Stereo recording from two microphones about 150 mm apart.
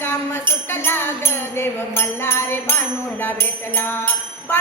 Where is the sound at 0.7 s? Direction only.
15° left (ahead or behind).